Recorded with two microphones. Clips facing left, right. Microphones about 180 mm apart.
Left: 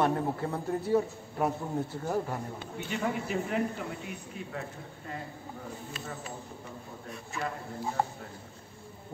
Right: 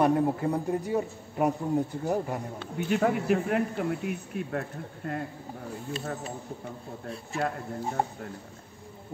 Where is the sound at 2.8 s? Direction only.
60° right (ahead or behind).